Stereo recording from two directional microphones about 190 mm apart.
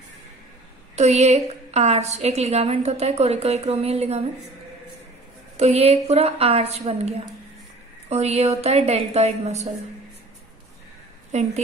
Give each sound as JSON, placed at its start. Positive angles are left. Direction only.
{"t": 0.9, "sound": "a woman's voice", "side_deg": -35}
{"t": 5.6, "sound": "a woman's voice", "side_deg": -35}
{"t": 11.3, "sound": "a woman's voice", "side_deg": -35}